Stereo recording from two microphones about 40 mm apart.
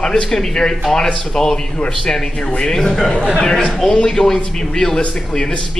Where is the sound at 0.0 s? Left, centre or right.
Centre.